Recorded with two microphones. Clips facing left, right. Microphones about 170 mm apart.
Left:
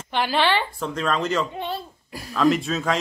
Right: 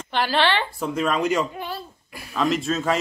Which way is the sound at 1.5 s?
25° left (ahead or behind).